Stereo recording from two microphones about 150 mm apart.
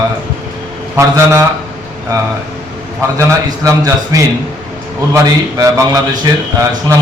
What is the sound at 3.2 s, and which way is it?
A man's voice, 20° right (ahead or behind).